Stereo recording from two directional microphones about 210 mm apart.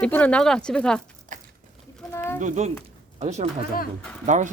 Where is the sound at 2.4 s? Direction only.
35° right (ahead or behind).